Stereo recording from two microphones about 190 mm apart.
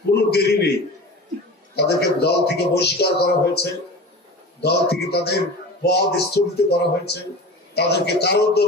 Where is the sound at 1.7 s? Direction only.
60° left (ahead or behind).